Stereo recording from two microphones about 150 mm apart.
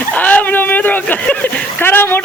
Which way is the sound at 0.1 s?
10° left (ahead or behind).